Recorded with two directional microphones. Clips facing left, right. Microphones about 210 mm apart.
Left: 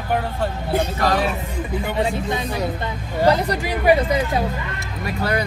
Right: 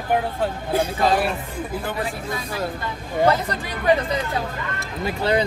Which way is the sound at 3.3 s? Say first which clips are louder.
Left 4 dB; 10° left (ahead or behind).